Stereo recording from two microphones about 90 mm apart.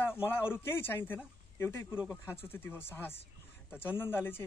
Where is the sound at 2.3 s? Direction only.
25° left (ahead or behind).